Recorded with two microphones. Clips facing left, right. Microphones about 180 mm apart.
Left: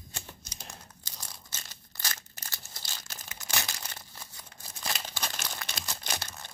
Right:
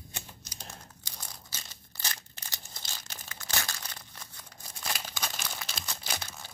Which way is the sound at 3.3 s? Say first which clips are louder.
Left 1 dB; 15° left (ahead or behind).